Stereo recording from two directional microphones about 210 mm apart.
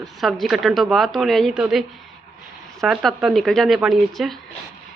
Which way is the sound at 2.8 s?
Centre (ahead or behind).